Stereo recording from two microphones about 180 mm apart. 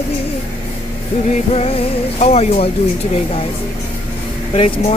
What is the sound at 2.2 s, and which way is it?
Speech, 35° left (ahead or behind).